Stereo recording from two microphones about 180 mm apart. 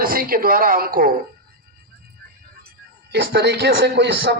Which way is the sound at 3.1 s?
65° right (ahead or behind).